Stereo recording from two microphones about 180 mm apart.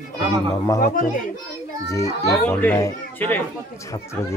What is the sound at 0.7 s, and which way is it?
Speech, 45° left (ahead or behind).